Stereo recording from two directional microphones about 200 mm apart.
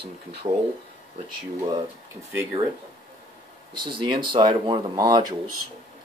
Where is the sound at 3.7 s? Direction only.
25° right (ahead or behind).